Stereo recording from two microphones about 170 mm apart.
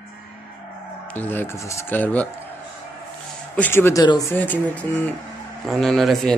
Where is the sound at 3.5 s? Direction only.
10° left (ahead or behind).